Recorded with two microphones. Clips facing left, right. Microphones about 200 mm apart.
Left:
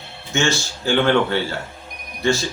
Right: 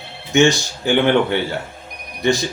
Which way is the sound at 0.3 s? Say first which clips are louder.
Right 7 dB; 15° right (ahead or behind).